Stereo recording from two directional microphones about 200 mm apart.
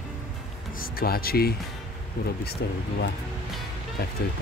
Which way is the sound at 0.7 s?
45° left (ahead or behind).